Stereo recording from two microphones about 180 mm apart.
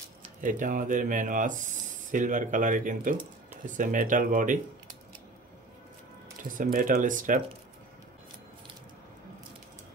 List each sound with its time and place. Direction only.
0.4 s speech: 45° right (ahead or behind)
6.6 s speech: 50° right (ahead or behind)